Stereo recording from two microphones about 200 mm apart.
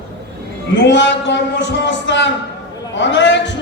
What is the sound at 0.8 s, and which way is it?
A man's voice, 60° left (ahead or behind).